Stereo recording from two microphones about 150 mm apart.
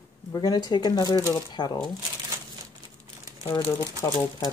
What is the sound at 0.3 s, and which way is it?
Speech, 25° left (ahead or behind).